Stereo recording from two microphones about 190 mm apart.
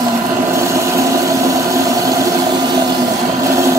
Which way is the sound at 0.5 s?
15° right (ahead or behind).